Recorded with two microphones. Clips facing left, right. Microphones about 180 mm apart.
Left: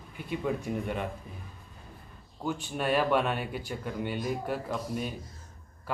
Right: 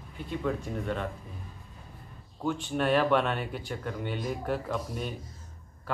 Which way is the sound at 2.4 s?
5° left (ahead or behind).